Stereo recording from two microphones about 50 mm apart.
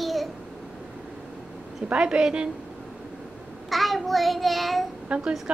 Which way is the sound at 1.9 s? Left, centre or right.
Centre.